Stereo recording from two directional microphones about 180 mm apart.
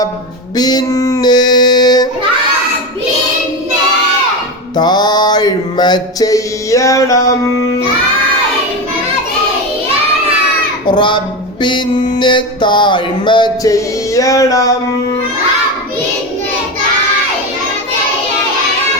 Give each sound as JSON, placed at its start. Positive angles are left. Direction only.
{"t": 0.5, "sound": "a sound", "side_deg": 20}
{"t": 4.8, "sound": "mantra", "side_deg": 25}
{"t": 10.8, "sound": "music", "side_deg": 25}